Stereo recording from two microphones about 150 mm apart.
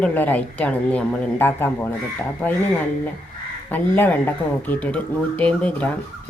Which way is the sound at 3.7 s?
10° left (ahead or behind).